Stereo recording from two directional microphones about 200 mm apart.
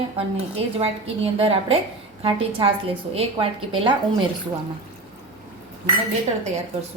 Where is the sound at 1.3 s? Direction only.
30° right (ahead or behind).